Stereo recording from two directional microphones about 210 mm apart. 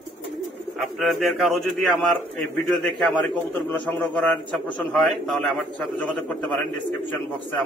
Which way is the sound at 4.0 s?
5° left (ahead or behind).